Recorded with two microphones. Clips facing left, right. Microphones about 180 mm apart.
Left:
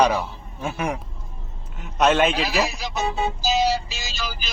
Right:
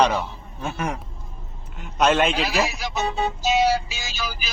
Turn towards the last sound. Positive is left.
turn(degrees=-5)  # may be behind; listen again after turning